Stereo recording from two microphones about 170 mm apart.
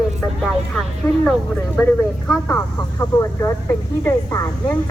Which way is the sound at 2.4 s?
15° left (ahead or behind).